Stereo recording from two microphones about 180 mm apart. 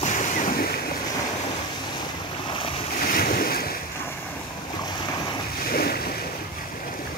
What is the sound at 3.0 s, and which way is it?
Waves, 50° left (ahead or behind).